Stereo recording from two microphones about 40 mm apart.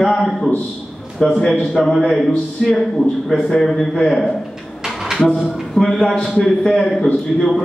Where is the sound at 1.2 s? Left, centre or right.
Centre.